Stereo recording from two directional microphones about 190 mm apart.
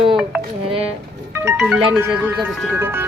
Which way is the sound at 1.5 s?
5° right (ahead or behind).